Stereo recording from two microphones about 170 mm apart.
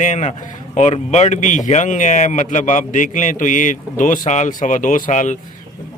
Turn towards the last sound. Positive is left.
turn(degrees=45)  # may be behind; listen again after turning